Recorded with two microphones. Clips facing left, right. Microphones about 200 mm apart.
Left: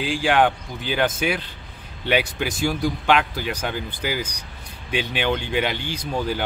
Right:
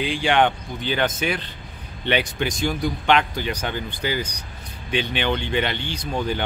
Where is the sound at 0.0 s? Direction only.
Centre (ahead or behind).